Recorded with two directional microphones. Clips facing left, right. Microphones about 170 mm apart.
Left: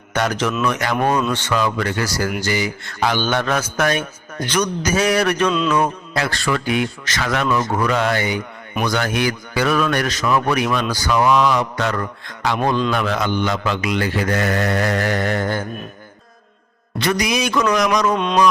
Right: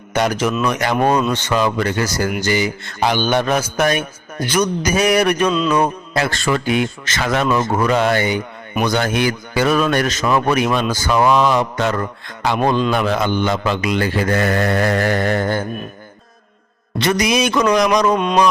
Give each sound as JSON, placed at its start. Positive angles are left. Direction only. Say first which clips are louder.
{"t": 0.1, "sound": "a man's voice", "louder": "right 3 dB", "side_deg": -10}
{"t": 6.1, "sound": "a man's voice", "louder": "right 3 dB", "side_deg": -25}
{"t": 17.0, "sound": "a man's voice", "louder": "right 3 dB", "side_deg": -20}